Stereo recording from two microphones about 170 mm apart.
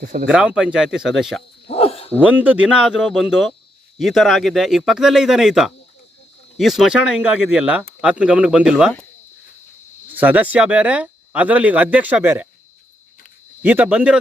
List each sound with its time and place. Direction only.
0.0 s speech: 55° right (ahead or behind)
0.3 s speech: 5° right (ahead or behind)
1.6 s dog: 35° left (ahead or behind)
2.2 s speech: 10° right (ahead or behind)
10.2 s speech: 10° right (ahead or behind)
13.7 s speech: 10° right (ahead or behind)